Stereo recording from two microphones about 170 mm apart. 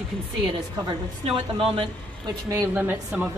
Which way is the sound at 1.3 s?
30° right (ahead or behind).